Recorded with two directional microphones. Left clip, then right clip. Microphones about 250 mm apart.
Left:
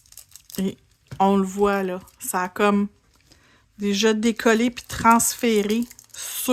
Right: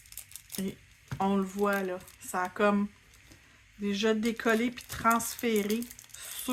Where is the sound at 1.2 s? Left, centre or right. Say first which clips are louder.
Left 10 dB; left.